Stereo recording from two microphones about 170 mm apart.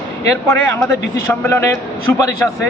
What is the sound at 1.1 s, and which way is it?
A man's voice, 15° left (ahead or behind).